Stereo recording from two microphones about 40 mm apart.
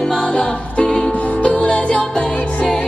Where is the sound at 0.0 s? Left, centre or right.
Centre.